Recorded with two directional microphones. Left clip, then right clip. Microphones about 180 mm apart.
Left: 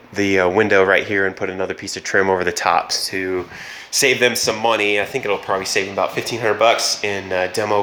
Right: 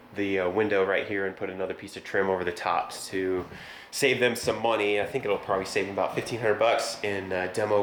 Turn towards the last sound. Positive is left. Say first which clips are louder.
# left 7 dB
turn(degrees=20)  # may be behind; listen again after turning